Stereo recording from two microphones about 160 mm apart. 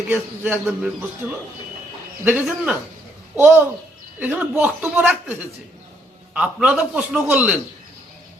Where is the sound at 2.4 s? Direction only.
5° right (ahead or behind).